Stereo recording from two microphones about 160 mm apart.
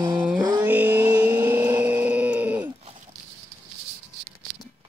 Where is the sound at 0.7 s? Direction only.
10° right (ahead or behind).